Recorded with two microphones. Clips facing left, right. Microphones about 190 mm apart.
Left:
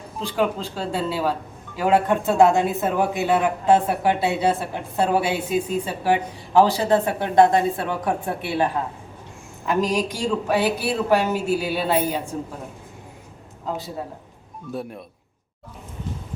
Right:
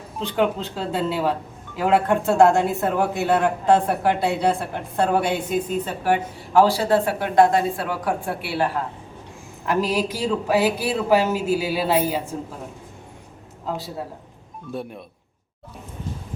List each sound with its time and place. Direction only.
0.2 s a woman's voice: 5° left (ahead or behind)
9.6 s speech: 5° right (ahead or behind)
13.7 s speech: centre (ahead or behind)